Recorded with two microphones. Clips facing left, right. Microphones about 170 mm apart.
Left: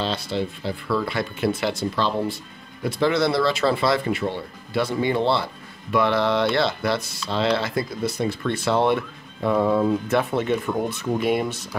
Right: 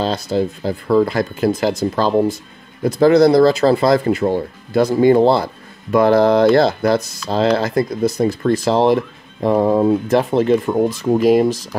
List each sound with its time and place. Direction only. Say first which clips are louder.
0.0 s speech: right 7 dB; 40° right (ahead or behind)